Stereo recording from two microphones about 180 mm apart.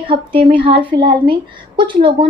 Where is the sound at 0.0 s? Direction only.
30° right (ahead or behind).